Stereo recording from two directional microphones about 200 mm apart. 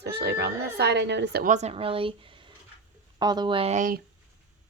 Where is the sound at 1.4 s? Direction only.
35° right (ahead or behind).